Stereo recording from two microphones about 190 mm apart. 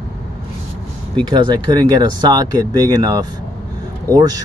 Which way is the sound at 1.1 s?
25° right (ahead or behind).